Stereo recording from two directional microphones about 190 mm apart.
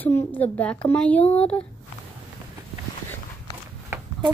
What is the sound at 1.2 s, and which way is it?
Speech, 30° left (ahead or behind).